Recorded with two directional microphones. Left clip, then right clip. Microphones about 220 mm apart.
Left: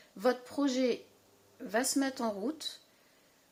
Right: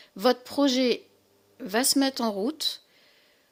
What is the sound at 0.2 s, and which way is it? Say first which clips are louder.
Speech: right 8 dB; 50° right (ahead or behind).